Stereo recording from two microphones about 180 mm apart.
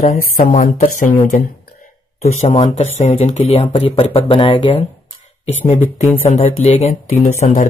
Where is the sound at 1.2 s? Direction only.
50° left (ahead or behind).